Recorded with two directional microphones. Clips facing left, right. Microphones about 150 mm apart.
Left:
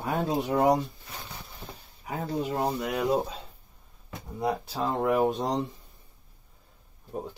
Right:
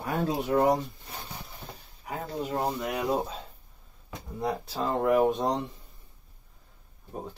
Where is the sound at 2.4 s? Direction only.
20° left (ahead or behind).